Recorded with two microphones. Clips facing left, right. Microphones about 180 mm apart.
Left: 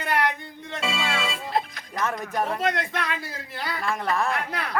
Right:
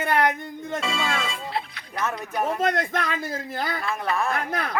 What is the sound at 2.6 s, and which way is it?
Speech, 45° right (ahead or behind).